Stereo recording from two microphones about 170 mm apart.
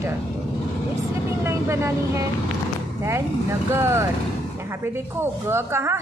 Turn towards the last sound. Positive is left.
turn(degrees=-15)  # may be behind; listen again after turning